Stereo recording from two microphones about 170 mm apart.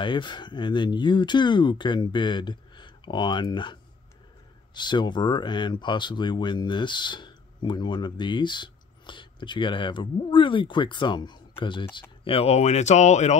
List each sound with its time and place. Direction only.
0.0 s speech: 30° left (ahead or behind)
4.7 s speech: 25° left (ahead or behind); by 13.4 s 45° left (ahead or behind)